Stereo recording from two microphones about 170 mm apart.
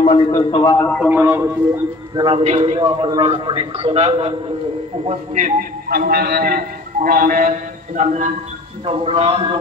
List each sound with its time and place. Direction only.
0.0 s a man's voice: 30° left (ahead or behind)
0.9 s speech: 10° right (ahead or behind)
2.1 s a man's voice: 30° right (ahead or behind); by 5.7 s 50° right (ahead or behind)
5.9 s a man's voice: 65° right (ahead or behind); by 8.3 s 45° right (ahead or behind)
8.8 s a man's voice: 35° right (ahead or behind)